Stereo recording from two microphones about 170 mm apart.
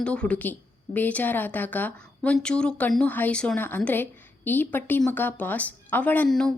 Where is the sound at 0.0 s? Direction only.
5° left (ahead or behind).